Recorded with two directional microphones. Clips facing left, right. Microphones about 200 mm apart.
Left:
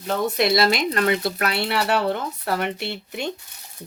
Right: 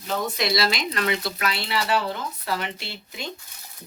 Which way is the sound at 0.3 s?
55° left (ahead or behind).